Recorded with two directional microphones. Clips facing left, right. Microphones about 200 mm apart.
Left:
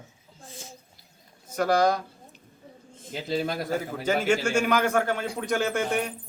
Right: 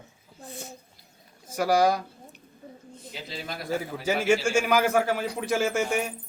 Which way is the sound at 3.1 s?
45° left (ahead or behind).